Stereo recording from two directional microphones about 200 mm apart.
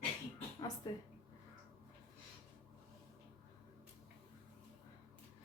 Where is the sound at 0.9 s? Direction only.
20° left (ahead or behind).